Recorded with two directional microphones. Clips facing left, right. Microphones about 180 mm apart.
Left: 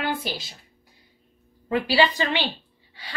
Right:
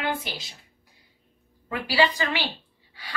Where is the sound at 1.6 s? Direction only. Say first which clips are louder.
Left 3 dB; 25° left (ahead or behind).